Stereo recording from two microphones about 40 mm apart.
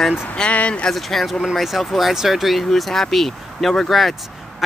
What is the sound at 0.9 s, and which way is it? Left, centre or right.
Speech, centre.